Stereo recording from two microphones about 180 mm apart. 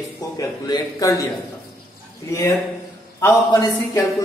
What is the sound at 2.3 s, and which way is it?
A man's voice, 15° left (ahead or behind).